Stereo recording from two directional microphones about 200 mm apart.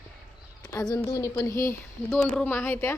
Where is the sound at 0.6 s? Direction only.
20° left (ahead or behind).